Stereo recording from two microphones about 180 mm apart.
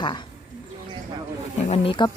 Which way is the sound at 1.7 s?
30° left (ahead or behind).